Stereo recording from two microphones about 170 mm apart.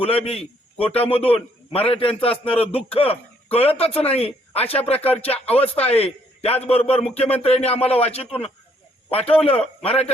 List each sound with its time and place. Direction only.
0.0 s a man's voice: 35° left (ahead or behind)
2.3 s speech: 5° left (ahead or behind)
2.6 s a man's voice: 35° left (ahead or behind)